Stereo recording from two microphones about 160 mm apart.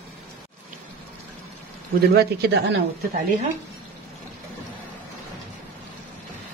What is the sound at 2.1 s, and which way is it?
Speech, 90° right.